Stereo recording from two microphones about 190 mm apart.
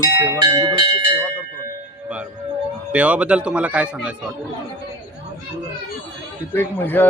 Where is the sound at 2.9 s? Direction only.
5° right (ahead or behind).